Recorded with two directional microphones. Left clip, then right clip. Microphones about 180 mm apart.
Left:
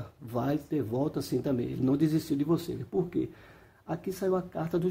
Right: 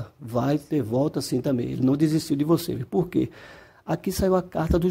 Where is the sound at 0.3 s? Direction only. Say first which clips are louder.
Right 6 dB; 35° right (ahead or behind).